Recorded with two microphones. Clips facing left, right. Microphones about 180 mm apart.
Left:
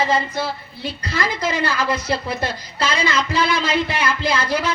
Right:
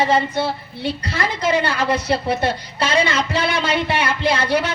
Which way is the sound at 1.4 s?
65° right (ahead or behind).